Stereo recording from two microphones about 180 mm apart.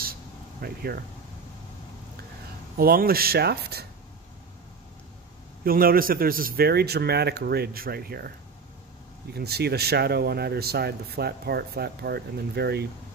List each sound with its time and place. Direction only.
0.0 s a sound: 55° right (ahead or behind)
2.8 s speech: 55° right (ahead or behind)
5.6 s speech: 55° right (ahead or behind)
9.3 s speech: 60° right (ahead or behind)